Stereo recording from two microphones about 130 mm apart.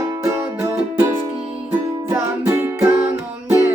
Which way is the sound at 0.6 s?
20° right (ahead or behind).